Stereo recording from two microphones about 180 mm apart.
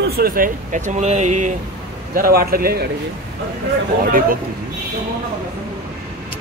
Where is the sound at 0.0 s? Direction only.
60° right (ahead or behind); by 1.5 s 40° right (ahead or behind).